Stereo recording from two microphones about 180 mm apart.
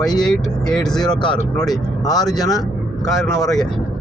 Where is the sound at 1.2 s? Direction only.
25° left (ahead or behind).